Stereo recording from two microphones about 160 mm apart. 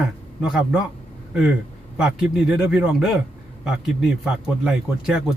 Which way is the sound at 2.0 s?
5° right (ahead or behind).